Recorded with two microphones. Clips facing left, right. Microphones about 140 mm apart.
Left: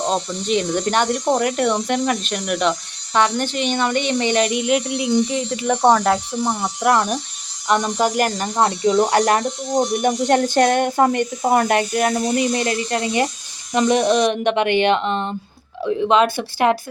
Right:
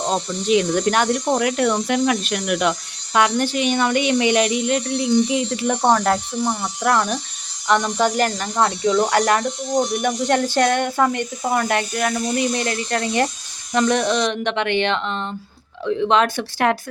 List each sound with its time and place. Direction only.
0.0 s speech: 5° right (ahead or behind)
8.4 s speech: 25° left (ahead or behind)
16.0 s speech: 5° left (ahead or behind)